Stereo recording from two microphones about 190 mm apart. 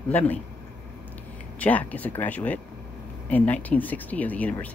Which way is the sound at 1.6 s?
10° left (ahead or behind).